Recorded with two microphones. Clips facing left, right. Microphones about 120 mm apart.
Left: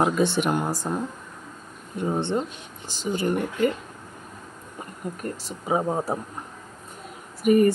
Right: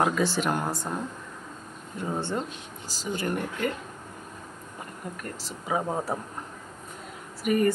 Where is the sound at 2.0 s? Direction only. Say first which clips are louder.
Left 5 dB; 25° left (ahead or behind).